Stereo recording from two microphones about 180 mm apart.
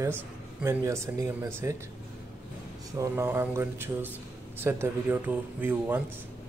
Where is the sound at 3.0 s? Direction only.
15° right (ahead or behind).